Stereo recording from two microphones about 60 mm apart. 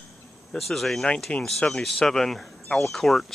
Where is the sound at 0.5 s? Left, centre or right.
Centre.